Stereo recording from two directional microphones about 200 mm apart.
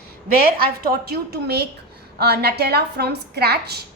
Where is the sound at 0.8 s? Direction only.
50° right (ahead or behind).